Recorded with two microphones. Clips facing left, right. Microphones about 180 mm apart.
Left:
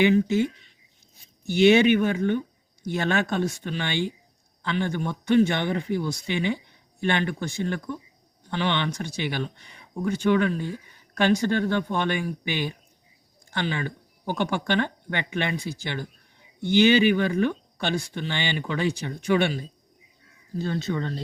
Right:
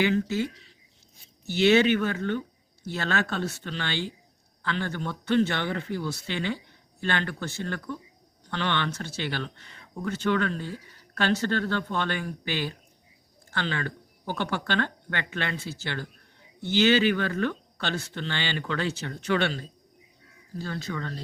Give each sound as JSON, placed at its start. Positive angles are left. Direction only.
{"t": 0.0, "sound": "speech", "side_deg": 15}